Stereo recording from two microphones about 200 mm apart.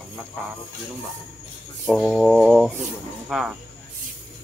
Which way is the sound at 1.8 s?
Centre (ahead or behind).